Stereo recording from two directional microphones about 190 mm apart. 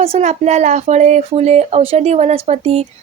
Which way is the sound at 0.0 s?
35° right (ahead or behind).